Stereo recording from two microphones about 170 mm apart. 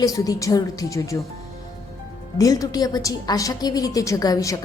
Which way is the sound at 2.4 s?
20° left (ahead or behind).